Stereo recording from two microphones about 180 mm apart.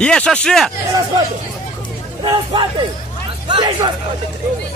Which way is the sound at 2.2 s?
25° right (ahead or behind).